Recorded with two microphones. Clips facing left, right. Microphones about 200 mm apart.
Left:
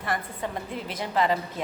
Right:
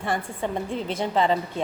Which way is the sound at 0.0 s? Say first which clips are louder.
Right 3 dB; 25° right (ahead or behind).